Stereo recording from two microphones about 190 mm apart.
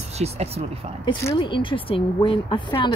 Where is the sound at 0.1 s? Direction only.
35° right (ahead or behind).